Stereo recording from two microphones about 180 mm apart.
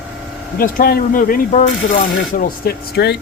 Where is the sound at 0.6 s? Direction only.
55° left (ahead or behind).